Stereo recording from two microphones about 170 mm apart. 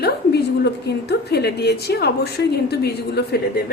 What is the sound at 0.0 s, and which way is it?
A woman's voice, 75° left (ahead or behind).